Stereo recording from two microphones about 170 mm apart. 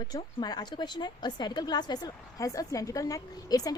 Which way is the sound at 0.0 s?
25° left (ahead or behind).